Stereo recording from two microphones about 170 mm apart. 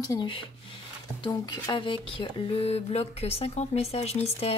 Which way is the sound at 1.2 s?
25° left (ahead or behind).